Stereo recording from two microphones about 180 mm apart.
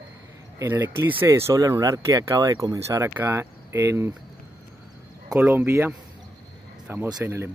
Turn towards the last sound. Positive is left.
turn(degrees=-15)  # may be behind; listen again after turning